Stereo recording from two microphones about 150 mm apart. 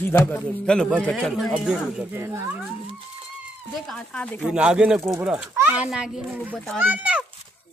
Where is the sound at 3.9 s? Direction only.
5° left (ahead or behind).